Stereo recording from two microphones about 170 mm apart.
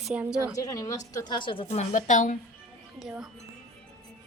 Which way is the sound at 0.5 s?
20° left (ahead or behind).